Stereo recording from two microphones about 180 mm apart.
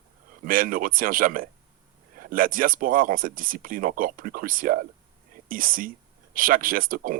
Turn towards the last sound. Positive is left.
turn(degrees=-50)  # may be behind; listen again after turning